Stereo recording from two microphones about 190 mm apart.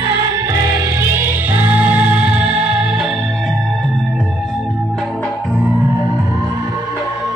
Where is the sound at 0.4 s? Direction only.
15° right (ahead or behind).